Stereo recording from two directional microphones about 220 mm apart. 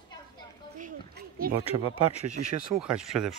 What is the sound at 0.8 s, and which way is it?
Speech, 40° right (ahead or behind).